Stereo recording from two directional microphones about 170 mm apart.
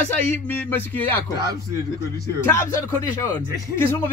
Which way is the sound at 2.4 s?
15° left (ahead or behind).